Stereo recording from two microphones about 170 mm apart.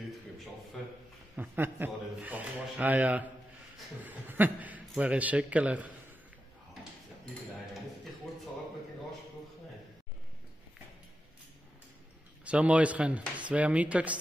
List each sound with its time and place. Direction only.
1.3 s speech: 10° right (ahead or behind)
12.4 s speech: 5° right (ahead or behind)